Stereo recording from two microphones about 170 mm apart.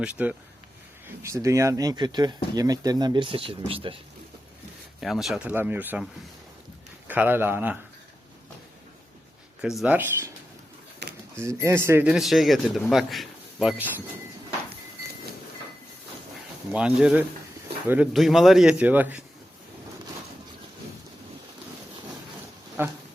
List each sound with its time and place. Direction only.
0.0 s speech: 10° right (ahead or behind); by 3.9 s 30° right (ahead or behind)
4.9 s speech: centre (ahead or behind)
7.1 s speech: 10° right (ahead or behind)
9.6 s speech: 5° right (ahead or behind)
11.0 s a sound: 80° right
11.3 s speech: 15° right (ahead or behind)
12.1 s speech: centre (ahead or behind)
16.7 s speech: 5° right (ahead or behind)
22.8 s speech: 15° right (ahead or behind)